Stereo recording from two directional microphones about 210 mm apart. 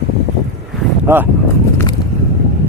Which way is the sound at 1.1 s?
10° right (ahead or behind).